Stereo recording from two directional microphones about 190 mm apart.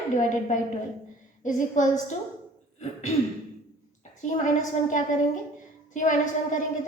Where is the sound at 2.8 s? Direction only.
35° left (ahead or behind).